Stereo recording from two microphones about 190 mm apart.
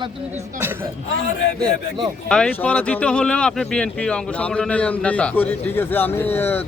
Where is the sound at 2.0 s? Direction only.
5° left (ahead or behind).